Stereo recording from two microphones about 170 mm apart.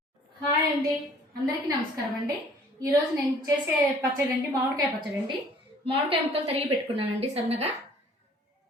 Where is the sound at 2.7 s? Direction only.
20° right (ahead or behind).